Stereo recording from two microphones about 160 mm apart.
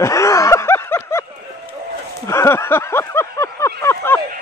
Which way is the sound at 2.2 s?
15° left (ahead or behind).